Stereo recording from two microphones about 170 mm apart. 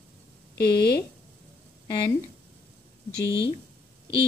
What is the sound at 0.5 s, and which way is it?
Speech, 70° left (ahead or behind).